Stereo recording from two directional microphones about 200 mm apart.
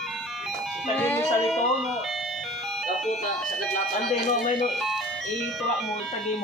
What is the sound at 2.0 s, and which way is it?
Ice cream truck, centre (ahead or behind).